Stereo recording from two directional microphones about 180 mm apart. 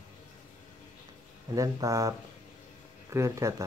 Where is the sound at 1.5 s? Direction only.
20° right (ahead or behind).